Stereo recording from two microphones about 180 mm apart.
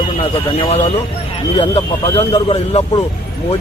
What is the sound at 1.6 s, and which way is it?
Speech, 30° left (ahead or behind).